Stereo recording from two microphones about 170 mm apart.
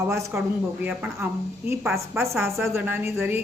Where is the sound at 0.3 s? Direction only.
10° right (ahead or behind).